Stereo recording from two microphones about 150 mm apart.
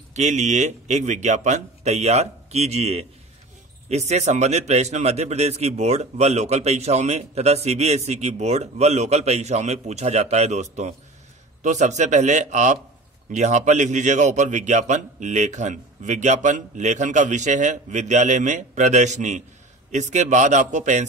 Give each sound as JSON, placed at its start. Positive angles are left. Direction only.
{"t": 0.1, "sound": "a man's voice", "side_deg": -50}